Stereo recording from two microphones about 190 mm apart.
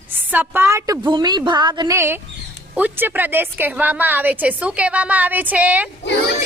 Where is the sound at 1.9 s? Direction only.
10° right (ahead or behind).